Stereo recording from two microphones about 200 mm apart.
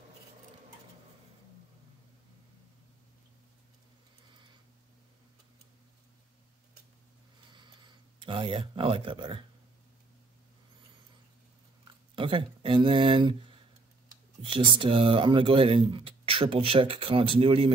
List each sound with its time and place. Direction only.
7.5 s a sound: 25° right (ahead or behind)
12.2 s speech: 25° right (ahead or behind)
14.4 s speech: 25° right (ahead or behind)